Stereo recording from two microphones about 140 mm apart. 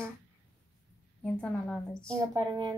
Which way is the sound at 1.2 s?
10° left (ahead or behind).